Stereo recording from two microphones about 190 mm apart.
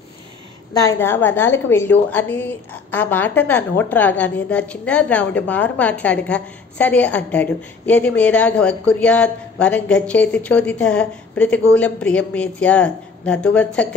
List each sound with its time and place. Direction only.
0.7 s a woman's voice: 15° left (ahead or behind)